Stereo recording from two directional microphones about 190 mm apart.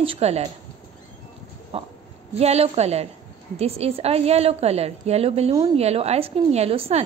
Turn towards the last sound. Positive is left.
turn(degrees=-30)  # may be behind; listen again after turning